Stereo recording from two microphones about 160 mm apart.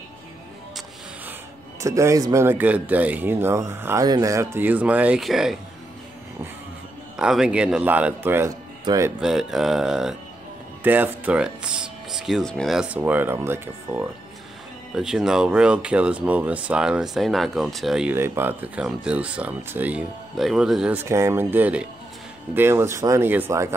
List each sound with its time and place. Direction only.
1.8 s a man's voice: 20° right (ahead or behind); by 5.6 s centre (ahead or behind)
7.2 s a man's voice: 5° right (ahead or behind); by 9.1 s 20° right (ahead or behind)
9.2 s a man's voice: centre (ahead or behind)
15.0 s speech: 5° right (ahead or behind)
18.1 s a man's voice: 15° right (ahead or behind)